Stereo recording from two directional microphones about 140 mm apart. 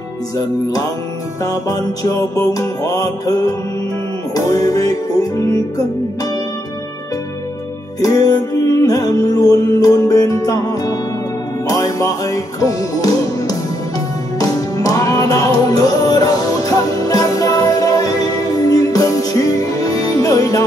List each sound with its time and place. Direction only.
1.4 s music: 25° left (ahead or behind)
8.0 s music: 25° left (ahead or behind)